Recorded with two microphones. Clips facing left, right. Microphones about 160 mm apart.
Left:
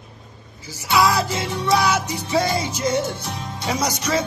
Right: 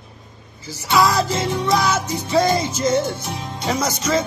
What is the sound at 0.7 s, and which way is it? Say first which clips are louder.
Music: right 1 dB; 10° left (ahead or behind).